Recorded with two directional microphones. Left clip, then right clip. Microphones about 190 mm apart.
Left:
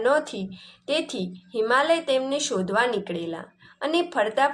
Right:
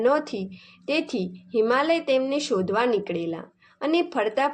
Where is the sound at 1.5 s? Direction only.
45° right (ahead or behind).